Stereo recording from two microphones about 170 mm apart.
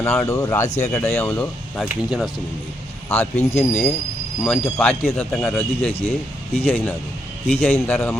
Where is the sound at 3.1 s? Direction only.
40° left (ahead or behind).